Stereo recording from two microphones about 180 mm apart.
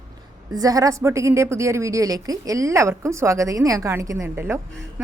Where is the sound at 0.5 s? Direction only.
20° right (ahead or behind).